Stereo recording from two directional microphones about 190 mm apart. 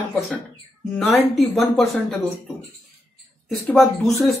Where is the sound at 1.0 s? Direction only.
Centre (ahead or behind).